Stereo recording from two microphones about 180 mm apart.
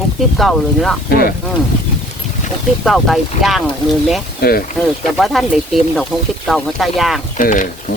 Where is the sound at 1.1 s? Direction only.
55° left (ahead or behind).